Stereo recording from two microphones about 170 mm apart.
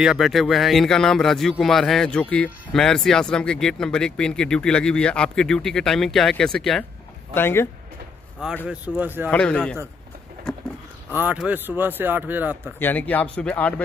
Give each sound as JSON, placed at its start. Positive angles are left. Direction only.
{"t": 0.0, "sound": "speech", "side_deg": 0}
{"t": 8.6, "sound": "speech", "side_deg": -10}
{"t": 9.3, "sound": "speech", "side_deg": 5}
{"t": 10.5, "sound": "dog", "side_deg": 5}
{"t": 11.1, "sound": "speech", "side_deg": -10}
{"t": 12.6, "sound": "speech", "side_deg": 10}